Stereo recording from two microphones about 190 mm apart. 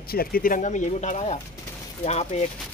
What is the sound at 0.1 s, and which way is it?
Speech, 50° left (ahead or behind).